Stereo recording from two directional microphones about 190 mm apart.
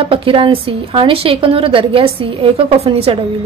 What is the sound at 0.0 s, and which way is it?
A woman's voice, 30° right (ahead or behind).